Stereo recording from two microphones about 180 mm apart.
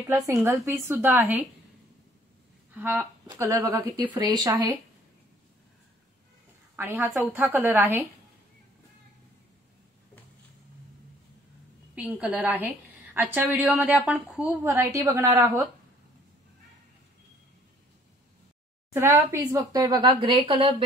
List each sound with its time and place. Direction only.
0.1 s a woman's voice: 20° right (ahead or behind)
2.7 s a woman's voice: 10° right (ahead or behind)
6.8 s a woman's voice: 10° right (ahead or behind)
11.9 s a woman's voice: 5° right (ahead or behind)
18.9 s a woman's voice: 15° right (ahead or behind)